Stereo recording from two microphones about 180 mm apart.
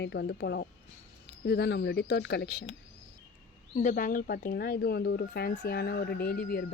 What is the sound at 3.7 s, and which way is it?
A woman's voice, 45° left (ahead or behind).